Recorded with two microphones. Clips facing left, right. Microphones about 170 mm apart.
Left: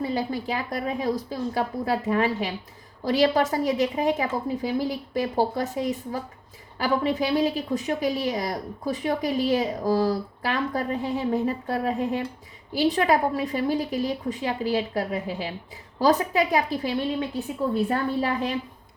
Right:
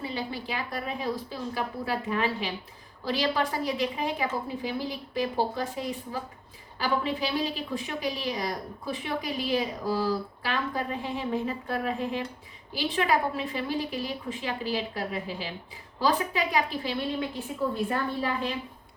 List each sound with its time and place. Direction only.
0.0 s a woman's voice: 45° left (ahead or behind)